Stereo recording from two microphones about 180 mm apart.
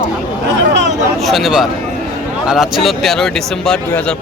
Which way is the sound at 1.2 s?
Centre (ahead or behind).